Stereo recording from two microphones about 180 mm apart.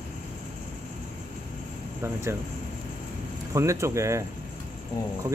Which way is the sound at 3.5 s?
15° right (ahead or behind).